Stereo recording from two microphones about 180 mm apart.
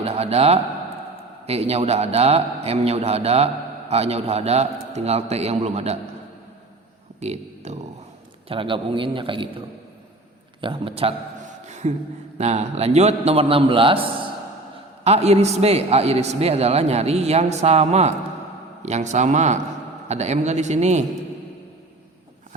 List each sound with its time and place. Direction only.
0.0 s a man's voice: 35° right (ahead or behind)
7.2 s a man's voice: 35° right (ahead or behind)
10.6 s a man's voice: 30° right (ahead or behind)
11.7 s a sound: 40° right (ahead or behind)
12.4 s a man's voice: 35° right (ahead or behind)
15.0 s a man's voice: 35° right (ahead or behind)